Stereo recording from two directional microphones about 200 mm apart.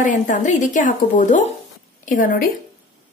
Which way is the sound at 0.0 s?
40° left (ahead or behind).